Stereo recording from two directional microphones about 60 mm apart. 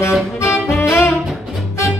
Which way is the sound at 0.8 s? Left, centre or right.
Left.